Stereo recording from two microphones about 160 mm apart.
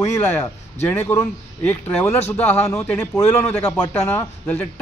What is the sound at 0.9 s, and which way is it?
A man's voice, 10° left (ahead or behind).